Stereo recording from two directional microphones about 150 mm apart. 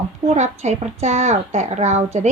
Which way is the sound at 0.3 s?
50° right (ahead or behind).